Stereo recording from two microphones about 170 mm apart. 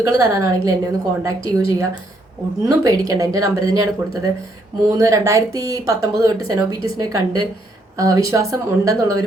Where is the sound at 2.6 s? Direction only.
20° right (ahead or behind).